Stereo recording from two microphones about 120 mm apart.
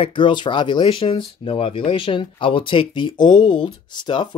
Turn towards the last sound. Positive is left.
turn(degrees=40)  # may be behind; listen again after turning